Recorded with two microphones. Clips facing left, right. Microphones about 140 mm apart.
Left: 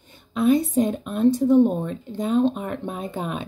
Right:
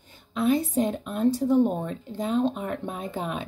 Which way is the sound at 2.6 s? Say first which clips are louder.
Left 2 dB; 20° left (ahead or behind).